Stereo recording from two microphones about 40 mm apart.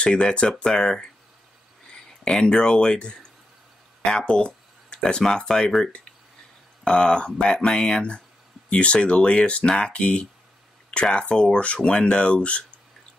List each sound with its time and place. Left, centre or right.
0.0 s speech: left
0.7 s speech: centre
2.2 s speech: centre
4.2 s a sound: left
5.0 s speech: centre
6.8 s speech: centre
7.8 s speech: left
9.7 s speech: centre
9.9 s speech: left